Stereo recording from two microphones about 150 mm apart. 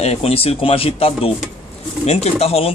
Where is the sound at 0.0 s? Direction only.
45° left (ahead or behind).